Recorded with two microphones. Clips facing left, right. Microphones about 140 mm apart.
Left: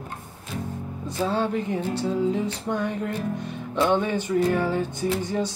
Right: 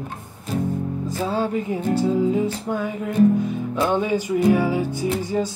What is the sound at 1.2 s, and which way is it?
Speech, 5° right (ahead or behind).